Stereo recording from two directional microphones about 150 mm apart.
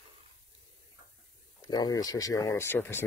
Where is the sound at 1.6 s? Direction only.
25° left (ahead or behind).